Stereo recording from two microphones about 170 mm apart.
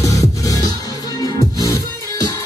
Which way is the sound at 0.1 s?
20° left (ahead or behind).